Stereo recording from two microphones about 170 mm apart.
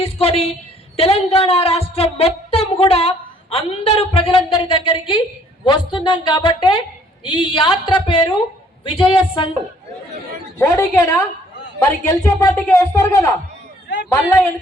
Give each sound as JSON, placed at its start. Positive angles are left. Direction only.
{"t": 0.0, "sound": "a woman's voice", "side_deg": 35}
{"t": 10.6, "sound": "speech", "side_deg": 15}
{"t": 13.8, "sound": "a sound", "side_deg": 80}